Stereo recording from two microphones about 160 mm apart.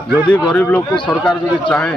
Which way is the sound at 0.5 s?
10° left (ahead or behind).